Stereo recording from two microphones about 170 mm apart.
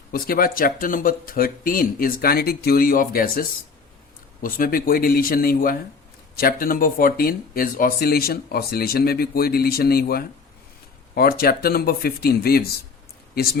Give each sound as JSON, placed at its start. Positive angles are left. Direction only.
{"t": 0.1, "sound": "speech", "side_deg": 60}
{"t": 4.4, "sound": "speech", "side_deg": 55}